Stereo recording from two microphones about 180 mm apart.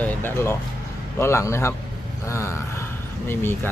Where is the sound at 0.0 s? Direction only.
10° left (ahead or behind).